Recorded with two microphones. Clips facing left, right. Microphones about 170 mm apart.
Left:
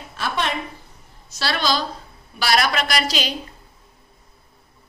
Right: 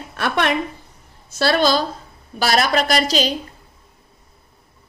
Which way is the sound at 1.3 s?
50° right (ahead or behind).